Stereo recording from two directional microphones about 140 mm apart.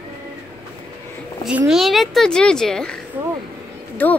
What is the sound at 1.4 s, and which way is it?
Speech, 5° right (ahead or behind).